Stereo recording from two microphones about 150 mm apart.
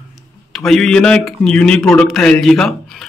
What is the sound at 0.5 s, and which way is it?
A man's voice, 5° left (ahead or behind).